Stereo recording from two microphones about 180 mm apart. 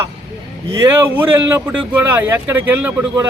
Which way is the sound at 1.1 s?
10° right (ahead or behind).